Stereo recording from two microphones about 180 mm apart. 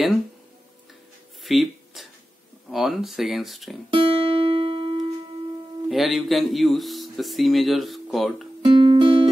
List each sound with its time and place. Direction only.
1.4 s a sound: centre (ahead or behind)
2.7 s speech: centre (ahead or behind)
3.9 s music: 30° right (ahead or behind)
5.9 s speech: centre (ahead or behind)
8.7 s music: 25° right (ahead or behind)